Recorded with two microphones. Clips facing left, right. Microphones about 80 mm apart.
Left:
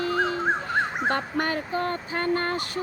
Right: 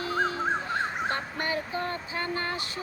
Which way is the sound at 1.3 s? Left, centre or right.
Left.